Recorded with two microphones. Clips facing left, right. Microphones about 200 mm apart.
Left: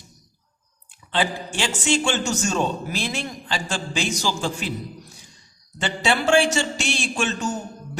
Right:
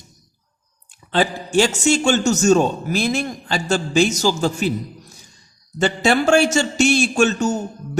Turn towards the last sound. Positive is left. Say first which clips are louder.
# right 8 dB
turn(degrees=-45)  # may be behind; listen again after turning